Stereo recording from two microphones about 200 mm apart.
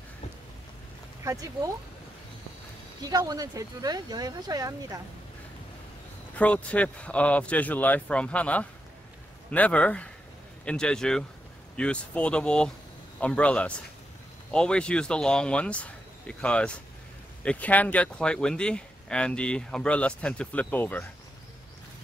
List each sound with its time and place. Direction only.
1.2 s speech: 15° right (ahead or behind)
3.0 s speech: 20° right (ahead or behind)
6.3 s speech: 5° left (ahead or behind)